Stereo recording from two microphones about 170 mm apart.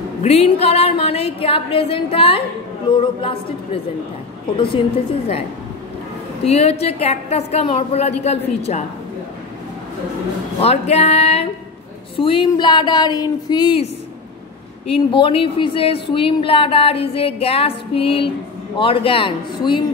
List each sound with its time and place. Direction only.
0.2 s speech: 35° left (ahead or behind)
6.4 s speech: 35° left (ahead or behind)
10.6 s speech: 35° left (ahead or behind)
14.9 s speech: 30° left (ahead or behind)